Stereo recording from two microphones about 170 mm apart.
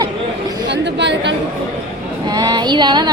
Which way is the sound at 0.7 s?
90° right.